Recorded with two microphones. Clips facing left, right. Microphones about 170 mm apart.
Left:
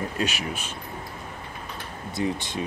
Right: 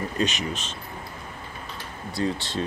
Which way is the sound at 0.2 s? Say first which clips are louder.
Right 4 dB; 10° left (ahead or behind).